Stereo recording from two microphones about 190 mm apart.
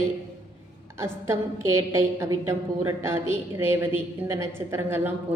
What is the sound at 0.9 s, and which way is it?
A woman's voice, 15° right (ahead or behind).